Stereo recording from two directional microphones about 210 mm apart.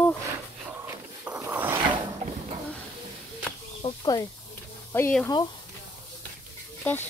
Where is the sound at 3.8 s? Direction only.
20° left (ahead or behind).